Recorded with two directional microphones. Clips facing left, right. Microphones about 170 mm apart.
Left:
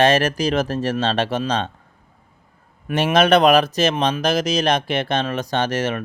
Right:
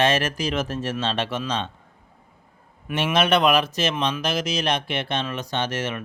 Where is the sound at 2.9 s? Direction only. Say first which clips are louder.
Left 5 dB; 40° left (ahead or behind).